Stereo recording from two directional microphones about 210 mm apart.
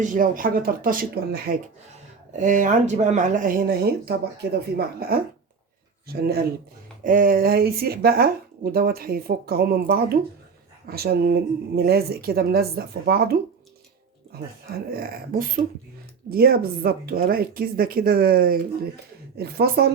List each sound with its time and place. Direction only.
0.0 s speech: 40° right (ahead or behind)
14.8 s speech: 45° right (ahead or behind)